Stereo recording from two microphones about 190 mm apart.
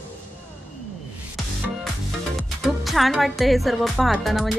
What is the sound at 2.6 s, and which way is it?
Music, centre (ahead or behind).